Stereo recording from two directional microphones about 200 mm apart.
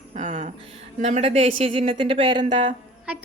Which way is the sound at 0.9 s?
35° right (ahead or behind).